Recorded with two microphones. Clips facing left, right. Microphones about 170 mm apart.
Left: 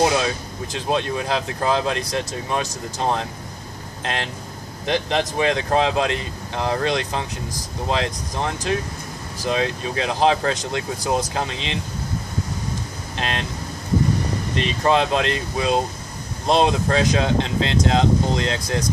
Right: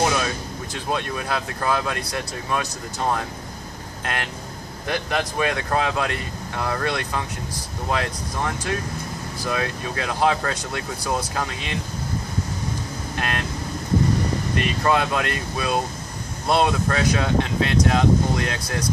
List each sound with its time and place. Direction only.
0.0 s speech: 25° left (ahead or behind)
13.2 s speech: 25° left (ahead or behind)
14.5 s speech: 25° left (ahead or behind)